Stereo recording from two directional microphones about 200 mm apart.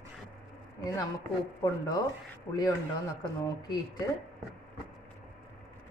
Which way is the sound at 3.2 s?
20° left (ahead or behind).